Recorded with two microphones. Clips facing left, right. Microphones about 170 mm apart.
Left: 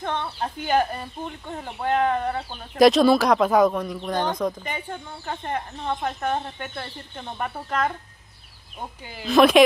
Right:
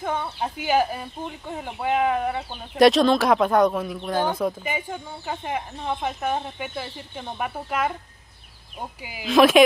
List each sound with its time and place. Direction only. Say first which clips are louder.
0.0 s speech: right 1 dB; 10° right (ahead or behind)
9.0 s speech: even; 5° right (ahead or behind)